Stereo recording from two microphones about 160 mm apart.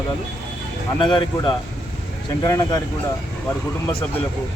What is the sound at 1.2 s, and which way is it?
Speech, 25° left (ahead or behind).